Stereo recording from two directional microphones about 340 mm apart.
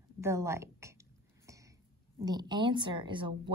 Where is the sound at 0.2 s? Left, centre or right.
Centre.